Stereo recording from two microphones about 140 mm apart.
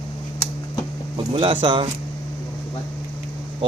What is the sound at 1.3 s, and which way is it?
Speech, 40° right (ahead or behind).